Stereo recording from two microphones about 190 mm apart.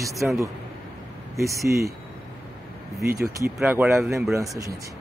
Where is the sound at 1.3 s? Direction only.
15° right (ahead or behind).